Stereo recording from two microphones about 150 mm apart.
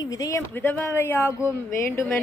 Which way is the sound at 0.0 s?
25° left (ahead or behind).